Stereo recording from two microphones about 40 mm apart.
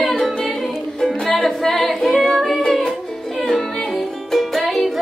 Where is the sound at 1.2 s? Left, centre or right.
Centre.